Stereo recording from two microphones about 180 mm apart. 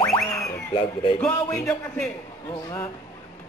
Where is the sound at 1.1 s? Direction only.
5° left (ahead or behind).